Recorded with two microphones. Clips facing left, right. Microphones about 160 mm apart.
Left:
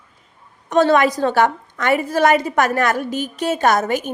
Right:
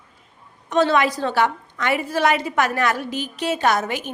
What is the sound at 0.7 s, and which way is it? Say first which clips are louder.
A woman's voice: left 4 dB; 45° left (ahead or behind).